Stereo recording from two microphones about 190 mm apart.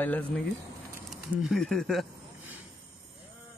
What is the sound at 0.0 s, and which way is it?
Speech, 10° left (ahead or behind).